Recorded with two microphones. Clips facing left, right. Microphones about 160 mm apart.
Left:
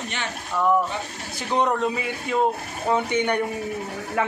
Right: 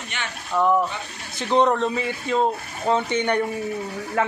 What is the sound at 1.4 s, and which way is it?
Speech, 10° left (ahead or behind).